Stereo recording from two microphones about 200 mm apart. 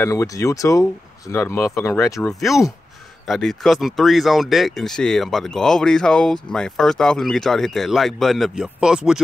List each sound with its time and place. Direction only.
0.0 s speech: 15° left (ahead or behind)
2.2 s speech: centre (ahead or behind)